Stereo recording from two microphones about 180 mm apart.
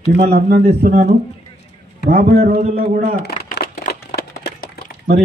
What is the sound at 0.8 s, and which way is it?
Speech, 45° right (ahead or behind).